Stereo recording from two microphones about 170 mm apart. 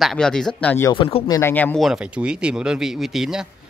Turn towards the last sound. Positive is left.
turn(degrees=-5)  # may be behind; listen again after turning